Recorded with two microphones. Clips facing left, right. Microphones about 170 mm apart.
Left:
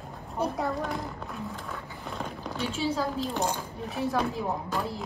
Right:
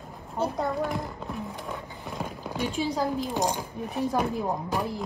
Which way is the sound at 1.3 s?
20° right (ahead or behind).